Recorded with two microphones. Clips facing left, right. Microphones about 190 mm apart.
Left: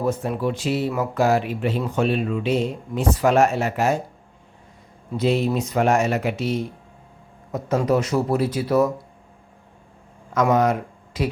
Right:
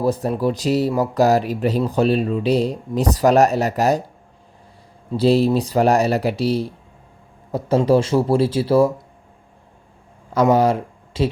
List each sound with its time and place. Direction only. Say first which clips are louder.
0.0 s speech: right 4 dB; 35° right (ahead or behind)
5.1 s speech: right 5 dB; 35° right (ahead or behind)
10.3 s speech: right 3 dB; 30° right (ahead or behind)